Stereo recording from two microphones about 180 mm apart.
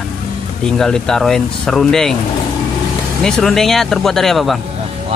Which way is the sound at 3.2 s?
5° left (ahead or behind).